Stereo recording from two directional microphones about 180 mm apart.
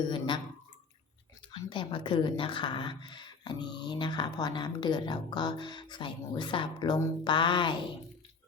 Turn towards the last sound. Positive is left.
turn(degrees=25)  # may be behind; listen again after turning